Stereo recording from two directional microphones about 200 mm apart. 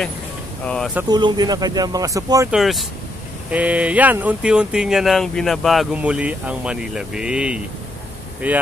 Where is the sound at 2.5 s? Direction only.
Centre (ahead or behind).